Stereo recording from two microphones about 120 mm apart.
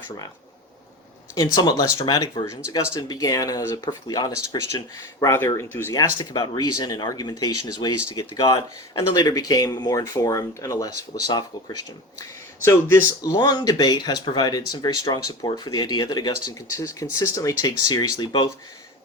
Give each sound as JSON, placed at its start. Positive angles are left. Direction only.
{"t": 1.5, "sound": "speech", "side_deg": 30}
{"t": 6.1, "sound": "speech", "side_deg": 35}
{"t": 12.6, "sound": "speech", "side_deg": 25}